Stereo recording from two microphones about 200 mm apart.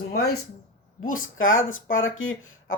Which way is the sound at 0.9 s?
90° left.